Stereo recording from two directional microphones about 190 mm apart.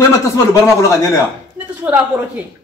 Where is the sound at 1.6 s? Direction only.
10° right (ahead or behind).